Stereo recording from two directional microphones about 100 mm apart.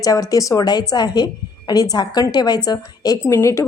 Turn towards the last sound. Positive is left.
turn(degrees=30)  # may be behind; listen again after turning